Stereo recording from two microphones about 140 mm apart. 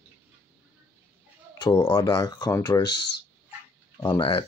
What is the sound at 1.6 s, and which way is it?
Speech, 30° left (ahead or behind).